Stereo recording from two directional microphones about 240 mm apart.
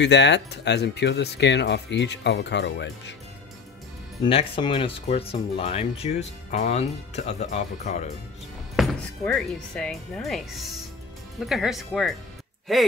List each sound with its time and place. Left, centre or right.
0.0 s speech: left
4.2 s speech: left
8.7 s speech: centre